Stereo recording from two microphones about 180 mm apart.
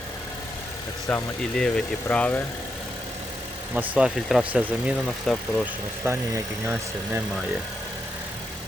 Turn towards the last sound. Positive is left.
turn(degrees=-15)  # may be behind; listen again after turning